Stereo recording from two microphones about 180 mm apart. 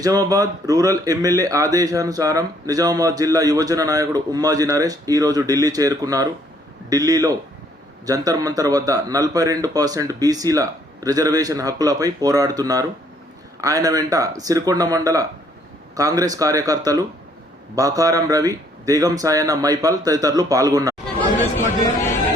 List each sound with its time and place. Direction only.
0.0 s speech: 20° right (ahead or behind)